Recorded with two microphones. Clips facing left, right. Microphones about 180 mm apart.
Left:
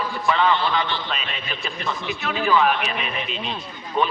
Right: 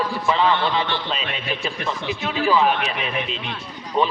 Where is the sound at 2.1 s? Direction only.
30° right (ahead or behind).